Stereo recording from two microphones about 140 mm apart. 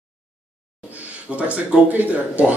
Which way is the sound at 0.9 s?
10° right (ahead or behind).